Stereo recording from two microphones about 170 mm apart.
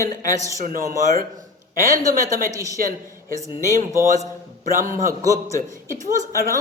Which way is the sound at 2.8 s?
55° right (ahead or behind).